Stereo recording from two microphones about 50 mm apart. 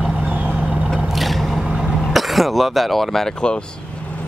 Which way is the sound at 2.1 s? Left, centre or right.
Centre.